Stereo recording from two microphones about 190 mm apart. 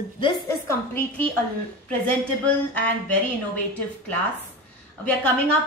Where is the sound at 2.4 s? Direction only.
5° left (ahead or behind).